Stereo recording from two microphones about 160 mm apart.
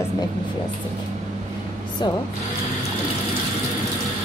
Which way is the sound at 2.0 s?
25° left (ahead or behind).